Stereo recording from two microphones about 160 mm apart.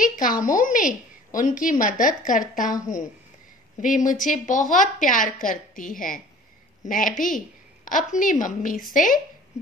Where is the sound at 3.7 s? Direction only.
50° left (ahead or behind).